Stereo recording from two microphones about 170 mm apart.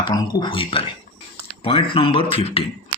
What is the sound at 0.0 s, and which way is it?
A man's voice, 25° left (ahead or behind).